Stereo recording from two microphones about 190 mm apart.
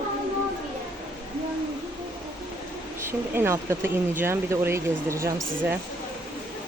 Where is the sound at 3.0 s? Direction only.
15° right (ahead or behind).